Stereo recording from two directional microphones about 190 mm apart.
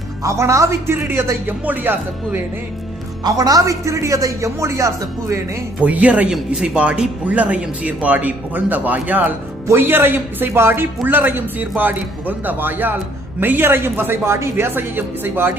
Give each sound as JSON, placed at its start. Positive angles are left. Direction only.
{"t": 0.2, "sound": "a man's voice", "side_deg": -15}